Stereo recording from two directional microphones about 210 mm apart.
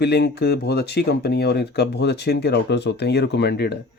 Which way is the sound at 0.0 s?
50° left (ahead or behind).